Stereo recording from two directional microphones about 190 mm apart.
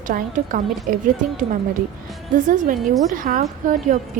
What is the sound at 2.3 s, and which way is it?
A woman's voice, 45° right (ahead or behind).